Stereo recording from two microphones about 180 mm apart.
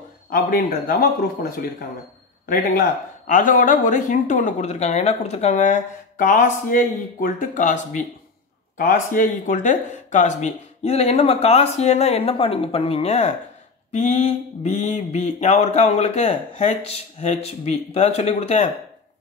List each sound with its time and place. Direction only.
0.3 s speech: 50° left (ahead or behind)
3.3 s speech: 45° left (ahead or behind)
8.7 s mantra: 45° left (ahead or behind)